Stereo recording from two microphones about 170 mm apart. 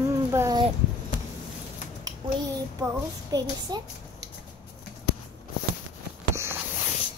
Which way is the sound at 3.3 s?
20° right (ahead or behind).